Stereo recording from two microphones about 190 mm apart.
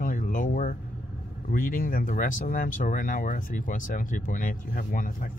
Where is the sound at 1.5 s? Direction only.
45° left (ahead or behind).